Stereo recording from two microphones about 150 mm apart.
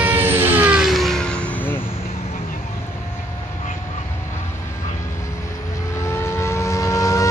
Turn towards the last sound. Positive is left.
turn(degrees=20)  # may be behind; listen again after turning